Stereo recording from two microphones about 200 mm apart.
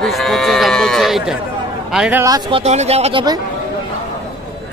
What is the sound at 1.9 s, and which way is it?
Speech, 5° right (ahead or behind).